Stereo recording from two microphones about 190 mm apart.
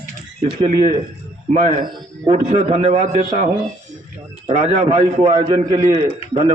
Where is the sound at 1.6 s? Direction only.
40° right (ahead or behind).